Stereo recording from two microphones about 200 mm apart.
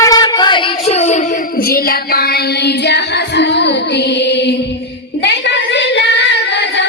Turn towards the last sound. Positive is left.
turn(degrees=60)  # may be behind; listen again after turning